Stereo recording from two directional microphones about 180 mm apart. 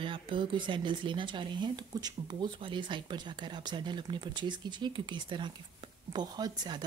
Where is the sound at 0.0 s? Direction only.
30° right (ahead or behind).